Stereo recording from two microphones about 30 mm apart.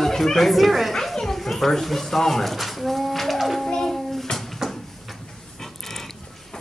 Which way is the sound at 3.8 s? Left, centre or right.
Centre.